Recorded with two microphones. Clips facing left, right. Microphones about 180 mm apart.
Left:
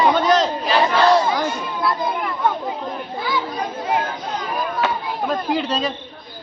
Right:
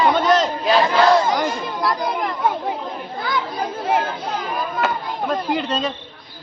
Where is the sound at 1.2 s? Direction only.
Centre (ahead or behind).